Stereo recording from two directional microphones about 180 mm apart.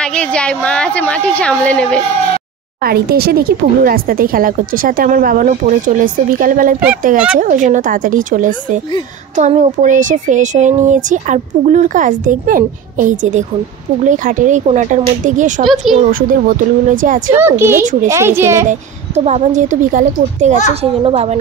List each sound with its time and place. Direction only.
0.0 s a woman's voice: 5° left (ahead or behind)
2.8 s speech: 55° right (ahead or behind)
15.6 s speech: centre (ahead or behind)
16.1 s speech: 50° right (ahead or behind)
17.3 s a woman's voice: 15° right (ahead or behind)
18.7 s speech: 40° right (ahead or behind)
20.8 s a woman's voice: 35° right (ahead or behind)